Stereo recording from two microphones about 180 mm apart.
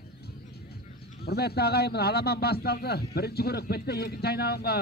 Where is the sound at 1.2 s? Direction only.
60° left (ahead or behind).